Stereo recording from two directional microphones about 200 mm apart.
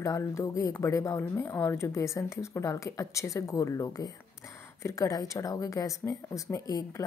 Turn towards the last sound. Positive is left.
turn(degrees=15)  # may be behind; listen again after turning